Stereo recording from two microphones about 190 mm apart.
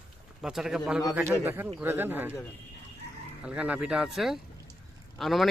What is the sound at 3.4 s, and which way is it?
Speech, 5° right (ahead or behind).